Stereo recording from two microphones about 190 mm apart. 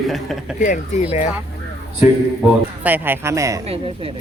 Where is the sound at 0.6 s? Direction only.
40° left (ahead or behind).